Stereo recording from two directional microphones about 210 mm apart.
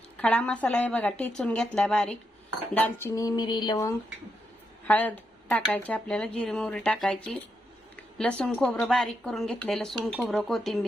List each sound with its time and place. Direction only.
0.2 s a woman's voice: 5° left (ahead or behind)
4.9 s a woman's voice: 10° left (ahead or behind)
8.2 s a woman's voice: 5° left (ahead or behind)